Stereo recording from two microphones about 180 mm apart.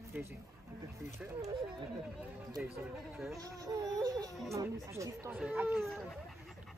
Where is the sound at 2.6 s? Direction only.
5° right (ahead or behind).